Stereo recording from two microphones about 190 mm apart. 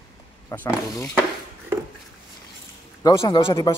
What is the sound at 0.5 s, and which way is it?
Speech, 15° left (ahead or behind).